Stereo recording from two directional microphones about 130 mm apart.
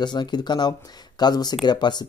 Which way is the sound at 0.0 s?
35° left (ahead or behind).